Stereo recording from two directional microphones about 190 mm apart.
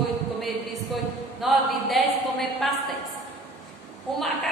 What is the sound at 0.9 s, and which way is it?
A man's voice, centre (ahead or behind).